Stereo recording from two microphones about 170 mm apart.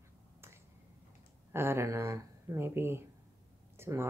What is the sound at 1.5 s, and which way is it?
Speech, 15° right (ahead or behind).